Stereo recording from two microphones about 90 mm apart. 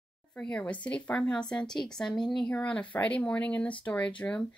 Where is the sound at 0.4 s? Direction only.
15° left (ahead or behind).